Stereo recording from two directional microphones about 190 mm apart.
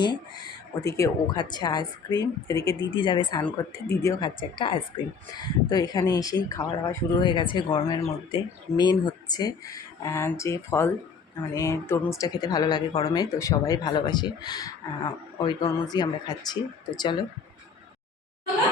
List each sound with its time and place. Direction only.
0.8 s speech: 15° left (ahead or behind)
4.4 s speech: 25° left (ahead or behind)